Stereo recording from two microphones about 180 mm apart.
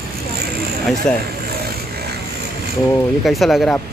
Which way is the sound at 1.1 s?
5° left (ahead or behind).